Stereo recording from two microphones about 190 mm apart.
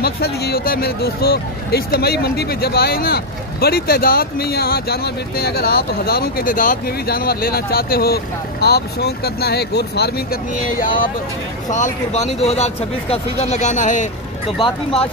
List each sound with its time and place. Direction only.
0.0 s speech: 55° left (ahead or behind)
11.7 s speech: 40° left (ahead or behind)